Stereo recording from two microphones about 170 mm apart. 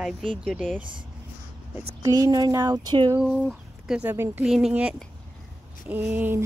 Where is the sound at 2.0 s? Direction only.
20° right (ahead or behind).